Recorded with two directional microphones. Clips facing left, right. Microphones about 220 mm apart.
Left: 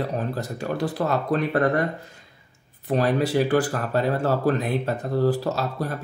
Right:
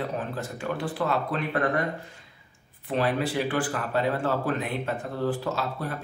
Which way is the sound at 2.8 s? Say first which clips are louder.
Left 4 dB; 40° left (ahead or behind).